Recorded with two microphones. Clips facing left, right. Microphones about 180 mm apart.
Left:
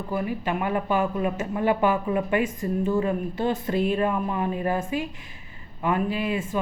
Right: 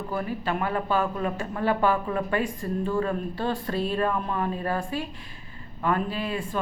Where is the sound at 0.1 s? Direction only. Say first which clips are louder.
Left 2 dB; 15° left (ahead or behind).